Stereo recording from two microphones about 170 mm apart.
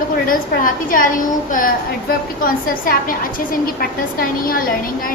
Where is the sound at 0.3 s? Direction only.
55° left (ahead or behind).